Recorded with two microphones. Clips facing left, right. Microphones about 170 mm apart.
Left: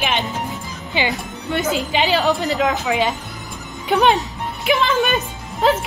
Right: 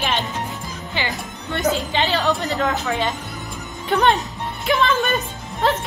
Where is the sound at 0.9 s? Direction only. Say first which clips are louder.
Left 5 dB; 20° left (ahead or behind).